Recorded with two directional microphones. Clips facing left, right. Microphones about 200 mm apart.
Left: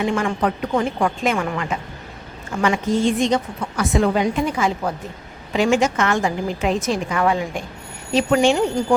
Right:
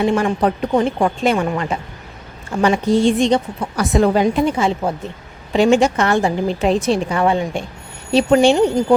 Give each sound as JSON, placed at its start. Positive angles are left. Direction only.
{"t": 0.0, "sound": "a woman's voice", "side_deg": -30}